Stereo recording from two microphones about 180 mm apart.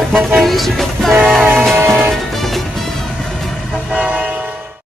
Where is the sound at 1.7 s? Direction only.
15° right (ahead or behind).